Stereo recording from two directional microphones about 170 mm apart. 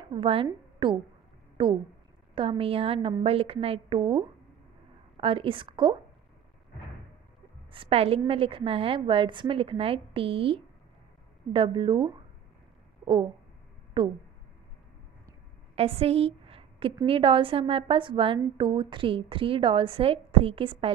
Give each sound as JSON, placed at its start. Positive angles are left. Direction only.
{"t": 0.1, "sound": "a woman's voice", "side_deg": -30}
{"t": 7.7, "sound": "a woman's voice", "side_deg": -35}
{"t": 13.0, "sound": "a sound", "side_deg": -25}
{"t": 14.0, "sound": "speech", "side_deg": -25}
{"t": 15.7, "sound": "a sound", "side_deg": -35}
{"t": 17.0, "sound": "a woman's voice", "side_deg": -30}